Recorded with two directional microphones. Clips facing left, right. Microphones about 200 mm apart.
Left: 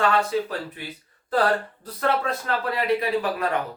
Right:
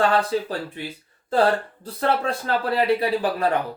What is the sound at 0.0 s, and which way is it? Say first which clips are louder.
Speech: right 2 dB; 35° right (ahead or behind).